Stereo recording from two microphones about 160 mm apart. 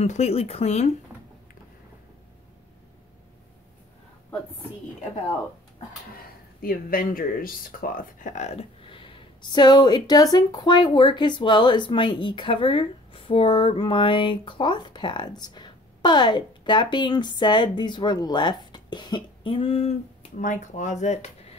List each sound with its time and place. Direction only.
0.0 s speech: 45° left (ahead or behind)
6.6 s speech: 65° left (ahead or behind); by 21.5 s 40° left (ahead or behind)